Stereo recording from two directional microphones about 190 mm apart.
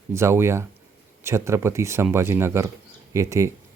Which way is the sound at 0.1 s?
15° right (ahead or behind).